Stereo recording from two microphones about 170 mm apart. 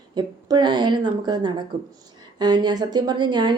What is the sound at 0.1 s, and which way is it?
A woman's voice, 25° right (ahead or behind).